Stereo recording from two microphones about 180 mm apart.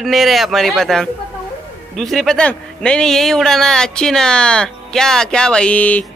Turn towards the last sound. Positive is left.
turn(degrees=10)  # may be behind; listen again after turning